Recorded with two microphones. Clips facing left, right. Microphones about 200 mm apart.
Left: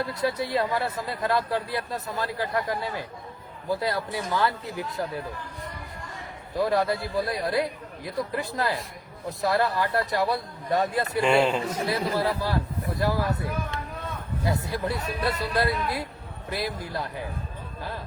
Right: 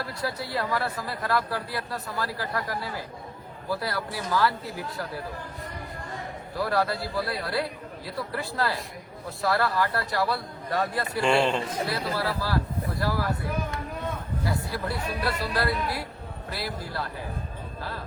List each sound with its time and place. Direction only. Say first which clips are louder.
0.0 s speech: left 5 dB; 20° left (ahead or behind)
6.6 s speech: left 3 dB; 20° left (ahead or behind)
11.2 s a man's voice: left 1 dB; 5° left (ahead or behind)
11.9 s speech: left 3 dB; 20° left (ahead or behind)
14.4 s speech: left 3 dB; 20° left (ahead or behind)